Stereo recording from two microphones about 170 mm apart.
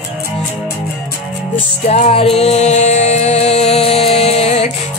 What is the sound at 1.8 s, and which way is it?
Music, 40° left (ahead or behind).